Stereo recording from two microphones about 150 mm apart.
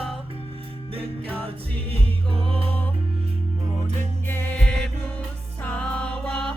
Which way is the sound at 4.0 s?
15° left (ahead or behind).